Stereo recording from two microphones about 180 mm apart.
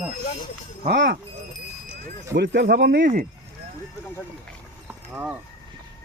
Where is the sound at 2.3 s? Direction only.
70° right (ahead or behind); by 3.3 s 50° right (ahead or behind).